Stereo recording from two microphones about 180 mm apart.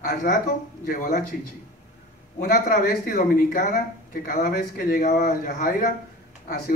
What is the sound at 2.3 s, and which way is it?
A man's voice, 45° left (ahead or behind).